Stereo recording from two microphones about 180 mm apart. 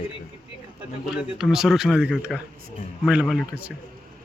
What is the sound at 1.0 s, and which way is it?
Speech, 5° right (ahead or behind).